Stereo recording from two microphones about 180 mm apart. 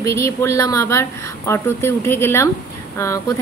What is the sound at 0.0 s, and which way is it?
A woman's voice, 15° left (ahead or behind).